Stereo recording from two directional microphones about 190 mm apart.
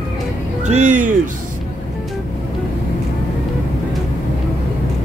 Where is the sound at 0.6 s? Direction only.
40° right (ahead or behind).